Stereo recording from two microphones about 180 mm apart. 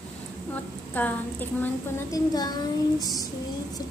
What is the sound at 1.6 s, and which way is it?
Child singing, 20° left (ahead or behind).